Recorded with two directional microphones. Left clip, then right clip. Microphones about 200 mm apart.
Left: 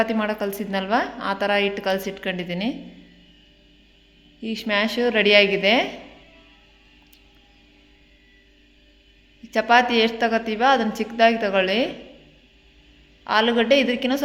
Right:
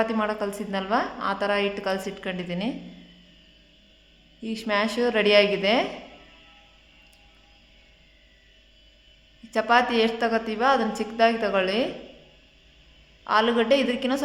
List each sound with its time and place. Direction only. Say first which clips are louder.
0.0 s a woman's voice: left 2 dB; 15° left (ahead or behind)
4.4 s a woman's voice: left 2 dB; 10° left (ahead or behind)
9.5 s a woman's voice: left 4 dB; 15° left (ahead or behind)
13.2 s a woman's voice: left 2 dB; 15° left (ahead or behind)